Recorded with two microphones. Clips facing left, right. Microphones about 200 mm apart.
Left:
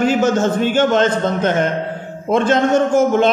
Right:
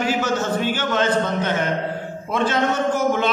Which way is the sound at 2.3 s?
50° left (ahead or behind).